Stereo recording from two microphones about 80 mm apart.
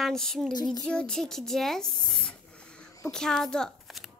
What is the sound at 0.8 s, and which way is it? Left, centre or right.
Speech, centre.